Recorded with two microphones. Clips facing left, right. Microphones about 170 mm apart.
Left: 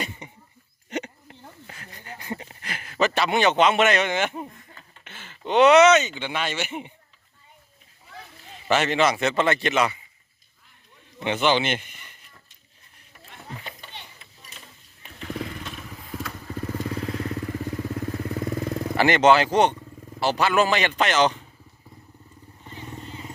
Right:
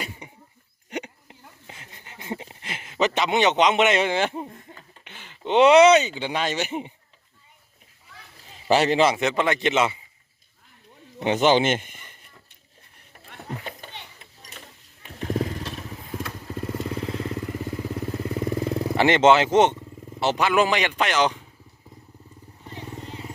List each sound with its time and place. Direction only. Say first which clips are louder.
0.2 s a sound: left 1 dB; 10° right (ahead or behind); by 4.6 s 30° right (ahead or behind)
5.0 s a sound: left 3 dB; 15° right (ahead or behind)
5.5 s speech: right 1 dB; 30° right (ahead or behind)
8.7 s speech: right 2 dB; 35° right (ahead or behind)
9.1 s speech: left 1 dB; 15° right (ahead or behind)
11.3 s a sound: right 3 dB; 40° right (ahead or behind)
13.1 s rowboat: right 4 dB; 50° right (ahead or behind)
15.2 s motorcycle: right 5 dB; 40° right (ahead or behind)
16.1 s motorcycle: right 1 dB; 20° right (ahead or behind)
16.7 s vehicle: even; 5° right (ahead or behind)
18.9 s a man's voice: right 1 dB; 25° right (ahead or behind)
22.7 s vehicle: right 2 dB; 80° right